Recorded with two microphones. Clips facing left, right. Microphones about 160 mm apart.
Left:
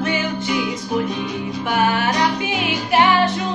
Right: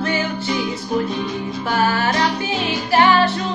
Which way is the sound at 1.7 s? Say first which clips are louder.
Even; 15° left (ahead or behind).